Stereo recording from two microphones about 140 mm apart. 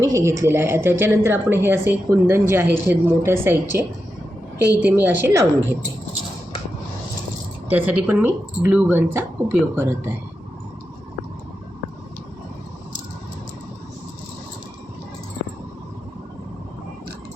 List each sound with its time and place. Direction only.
0.0 s a woman's voice: 20° right (ahead or behind)
7.8 s a woman's voice: 10° right (ahead or behind)